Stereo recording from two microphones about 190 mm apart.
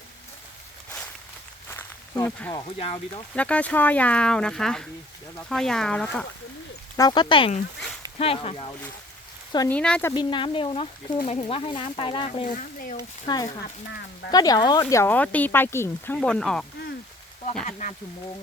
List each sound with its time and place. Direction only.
1.7 s a sound: 15° left (ahead or behind)
2.7 s speech: 30° left (ahead or behind)
3.3 s speech: 5° left (ahead or behind)
6.9 s speech: 20° left (ahead or behind)
9.6 s speech: 5° left (ahead or behind)
10.2 s speech: 25° left (ahead or behind)
12.5 s speech: 45° left (ahead or behind)
13.0 s speech: 20° left (ahead or behind); by 16.6 s 5° left (ahead or behind)
17.7 s speech: 40° left (ahead or behind)